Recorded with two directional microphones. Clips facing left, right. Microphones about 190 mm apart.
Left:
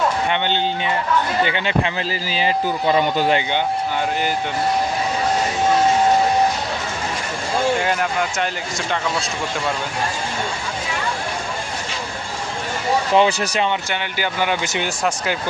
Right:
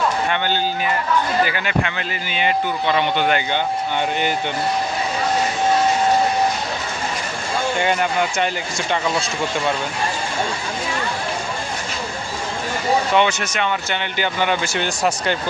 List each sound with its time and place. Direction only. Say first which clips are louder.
0.3 s speech: left 1 dB; 20° left (ahead or behind)
7.8 s speech: right 2 dB; centre (ahead or behind)
13.1 s speech: left 2 dB; 35° left (ahead or behind)
13.9 s speech: right 1 dB; 10° left (ahead or behind)
14.6 s speech: right 1 dB; 20° left (ahead or behind)